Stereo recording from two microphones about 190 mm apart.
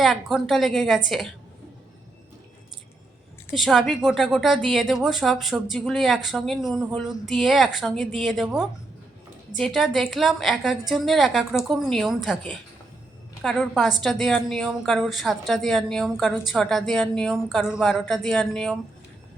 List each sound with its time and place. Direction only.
0.0 s a woman's voice: centre (ahead or behind)
3.5 s a woman's voice: centre (ahead or behind)